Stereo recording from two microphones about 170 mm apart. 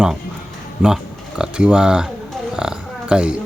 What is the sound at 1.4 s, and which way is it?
Speech, 5° right (ahead or behind).